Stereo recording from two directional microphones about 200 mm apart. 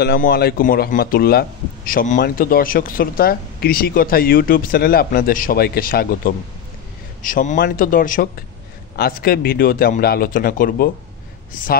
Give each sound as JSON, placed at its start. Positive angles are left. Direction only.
{"t": 0.0, "sound": "a man's voice", "side_deg": 50}